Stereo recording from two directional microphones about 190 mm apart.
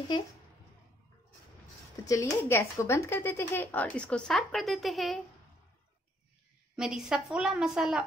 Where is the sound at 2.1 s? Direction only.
15° left (ahead or behind).